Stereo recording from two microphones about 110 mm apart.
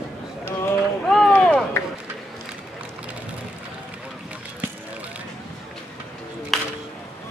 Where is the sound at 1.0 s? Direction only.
5° left (ahead or behind).